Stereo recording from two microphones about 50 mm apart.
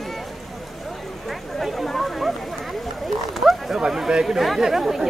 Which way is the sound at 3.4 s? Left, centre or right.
Centre.